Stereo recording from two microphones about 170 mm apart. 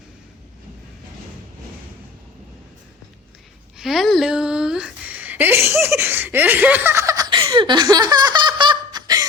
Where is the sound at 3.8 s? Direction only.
Centre (ahead or behind).